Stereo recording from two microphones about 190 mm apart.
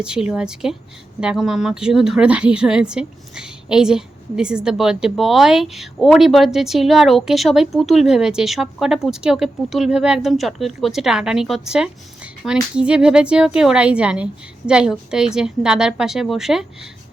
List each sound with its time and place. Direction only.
0.0 s speech: 5° right (ahead or behind)